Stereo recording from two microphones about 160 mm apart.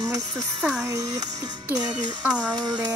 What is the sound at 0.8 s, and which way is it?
A child's voice, 20° right (ahead or behind).